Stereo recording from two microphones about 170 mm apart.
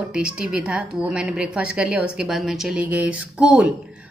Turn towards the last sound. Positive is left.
turn(degrees=-5)  # may be behind; listen again after turning